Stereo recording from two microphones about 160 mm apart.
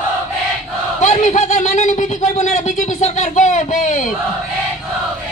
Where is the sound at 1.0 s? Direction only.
50° left (ahead or behind).